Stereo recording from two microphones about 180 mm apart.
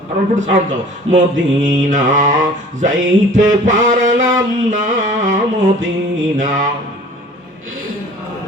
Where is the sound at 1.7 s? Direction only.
45° right (ahead or behind).